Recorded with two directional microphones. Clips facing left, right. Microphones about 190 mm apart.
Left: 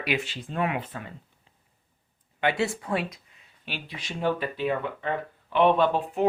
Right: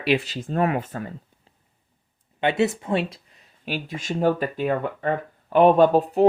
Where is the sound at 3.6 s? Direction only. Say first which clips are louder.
Right 9 dB; 45° right (ahead or behind).